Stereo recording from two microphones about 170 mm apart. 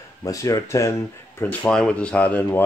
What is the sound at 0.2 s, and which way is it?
Speech, 20° left (ahead or behind).